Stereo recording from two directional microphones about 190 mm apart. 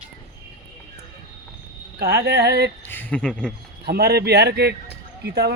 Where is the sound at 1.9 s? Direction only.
60° right (ahead or behind).